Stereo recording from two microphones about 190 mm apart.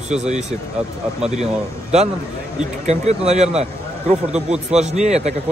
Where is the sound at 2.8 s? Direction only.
35° right (ahead or behind).